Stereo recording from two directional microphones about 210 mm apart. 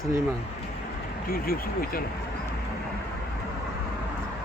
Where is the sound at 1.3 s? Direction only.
45° left (ahead or behind).